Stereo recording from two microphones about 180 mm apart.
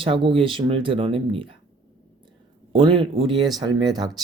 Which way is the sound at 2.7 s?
30° right (ahead or behind).